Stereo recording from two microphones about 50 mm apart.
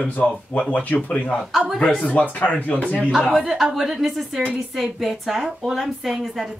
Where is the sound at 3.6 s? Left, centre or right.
Centre.